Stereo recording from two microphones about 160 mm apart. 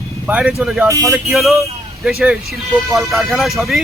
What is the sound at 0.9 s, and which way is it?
Speech, 20° right (ahead or behind).